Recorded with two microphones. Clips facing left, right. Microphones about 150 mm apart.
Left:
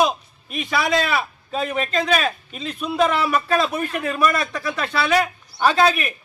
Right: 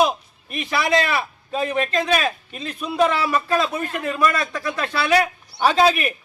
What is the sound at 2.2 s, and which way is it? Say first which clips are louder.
A man's voice: even; 5° right (ahead or behind).